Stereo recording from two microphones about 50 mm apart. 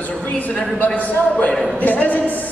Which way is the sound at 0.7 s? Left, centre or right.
Left.